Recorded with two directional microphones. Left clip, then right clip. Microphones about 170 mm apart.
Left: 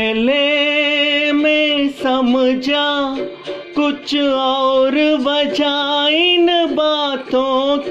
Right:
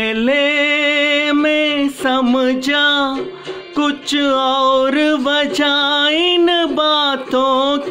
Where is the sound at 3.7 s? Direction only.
5° right (ahead or behind).